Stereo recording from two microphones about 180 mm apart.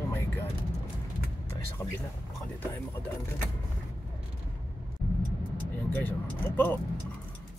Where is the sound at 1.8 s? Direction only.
15° left (ahead or behind).